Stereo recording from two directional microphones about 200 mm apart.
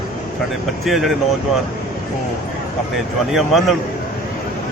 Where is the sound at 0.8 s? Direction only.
Centre (ahead or behind).